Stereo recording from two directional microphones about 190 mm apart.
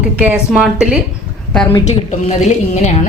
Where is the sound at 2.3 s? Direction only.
35° left (ahead or behind).